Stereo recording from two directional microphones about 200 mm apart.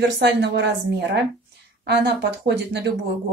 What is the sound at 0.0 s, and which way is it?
Speech, 60° right (ahead or behind).